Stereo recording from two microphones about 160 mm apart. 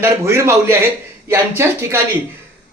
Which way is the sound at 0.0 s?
15° right (ahead or behind).